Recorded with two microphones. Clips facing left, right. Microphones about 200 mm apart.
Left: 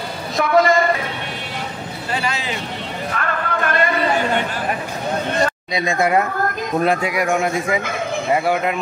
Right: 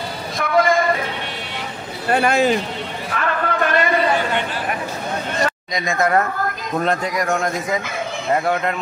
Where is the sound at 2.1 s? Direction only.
50° right (ahead or behind).